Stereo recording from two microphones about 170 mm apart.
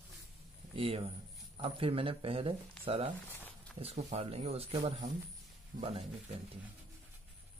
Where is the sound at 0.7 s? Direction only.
35° right (ahead or behind).